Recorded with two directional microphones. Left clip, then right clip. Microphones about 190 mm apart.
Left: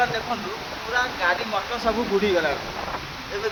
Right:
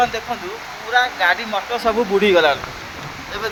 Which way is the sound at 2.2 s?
30° right (ahead or behind).